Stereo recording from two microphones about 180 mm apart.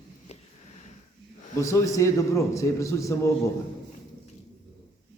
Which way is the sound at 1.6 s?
15° left (ahead or behind).